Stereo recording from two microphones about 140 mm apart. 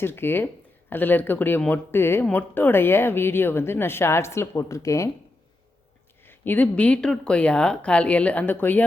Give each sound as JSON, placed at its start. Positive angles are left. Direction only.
{"t": 0.0, "sound": "speech", "side_deg": 15}
{"t": 6.2, "sound": "speech", "side_deg": 15}